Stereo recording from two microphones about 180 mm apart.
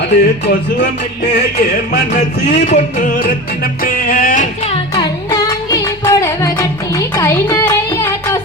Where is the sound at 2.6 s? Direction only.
45° left (ahead or behind).